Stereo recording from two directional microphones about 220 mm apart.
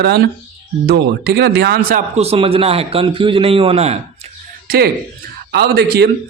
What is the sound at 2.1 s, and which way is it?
A man's voice, 30° right (ahead or behind).